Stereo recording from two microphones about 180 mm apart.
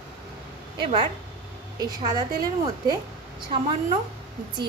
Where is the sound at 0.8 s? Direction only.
25° right (ahead or behind).